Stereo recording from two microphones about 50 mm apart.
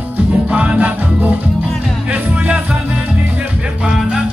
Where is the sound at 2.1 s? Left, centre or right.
Right.